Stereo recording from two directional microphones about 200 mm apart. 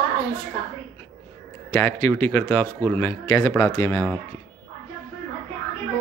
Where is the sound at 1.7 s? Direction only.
15° left (ahead or behind).